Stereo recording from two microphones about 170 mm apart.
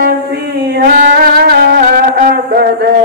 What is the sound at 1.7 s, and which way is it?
Music, 55° right (ahead or behind).